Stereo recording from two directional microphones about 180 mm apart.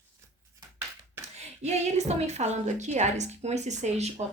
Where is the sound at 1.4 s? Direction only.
40° right (ahead or behind).